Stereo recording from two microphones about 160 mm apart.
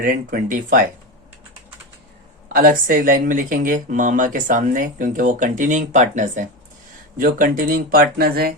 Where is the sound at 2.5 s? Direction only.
65° right (ahead or behind).